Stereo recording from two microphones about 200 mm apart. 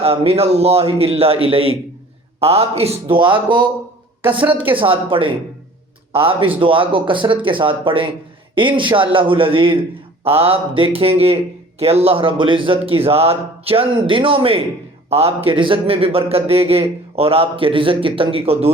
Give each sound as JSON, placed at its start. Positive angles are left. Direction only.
{"t": 0.0, "sound": "a man's voice", "side_deg": -30}
{"t": 4.8, "sound": "a man's voice", "side_deg": -25}